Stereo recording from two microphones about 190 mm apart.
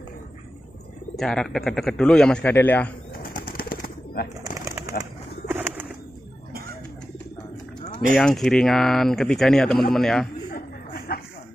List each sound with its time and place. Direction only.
1.1 s speech: 5° left (ahead or behind)
3.2 s bird: 50° left (ahead or behind)
5.5 s bird: 10° right (ahead or behind)
8.2 s speech: 5° left (ahead or behind)
10.5 s a sound: 50° left (ahead or behind)